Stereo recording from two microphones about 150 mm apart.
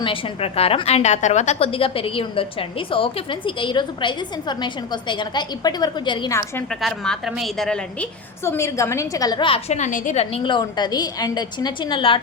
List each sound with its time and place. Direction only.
0.0 s a woman's voice: 40° left (ahead or behind)
6.8 s a woman's voice: centre (ahead or behind)
8.4 s a woman's voice: 20° left (ahead or behind); by 9.7 s 35° left (ahead or behind)
9.7 s a woman's voice: 55° left (ahead or behind)
10.4 s a woman's voice: 30° left (ahead or behind)